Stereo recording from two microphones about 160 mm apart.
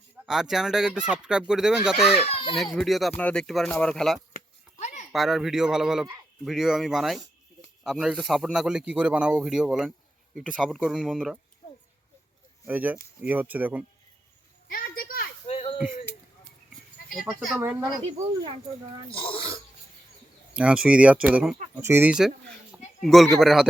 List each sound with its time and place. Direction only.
0.3 s speech: 5° right (ahead or behind)
2.2 s speech: 35° left (ahead or behind)
2.7 s speech: centre (ahead or behind)
4.8 s a sound: 50° left (ahead or behind)
5.1 s speech: centre (ahead or behind)
12.6 s speech: 10° right (ahead or behind)
14.7 s children playing: 65° left (ahead or behind)
15.4 s a sound: 40° left (ahead or behind)
17.6 s speech: 15° right (ahead or behind)
19.1 s speech: 35° left (ahead or behind)
20.5 s speech: 5° right (ahead or behind)